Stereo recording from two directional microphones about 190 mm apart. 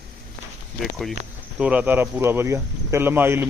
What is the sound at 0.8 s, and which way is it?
Speech, centre (ahead or behind).